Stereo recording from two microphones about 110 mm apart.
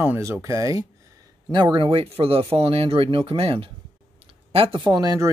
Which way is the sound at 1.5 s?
45° right (ahead or behind).